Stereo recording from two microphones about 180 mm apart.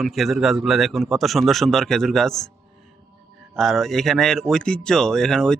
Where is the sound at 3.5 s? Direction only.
Centre (ahead or behind).